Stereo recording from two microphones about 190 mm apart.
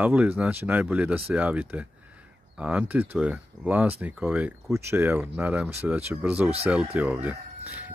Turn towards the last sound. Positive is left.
turn(degrees=-10)  # may be behind; listen again after turning